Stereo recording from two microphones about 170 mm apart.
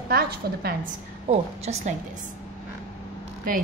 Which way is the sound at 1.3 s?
40° right (ahead or behind).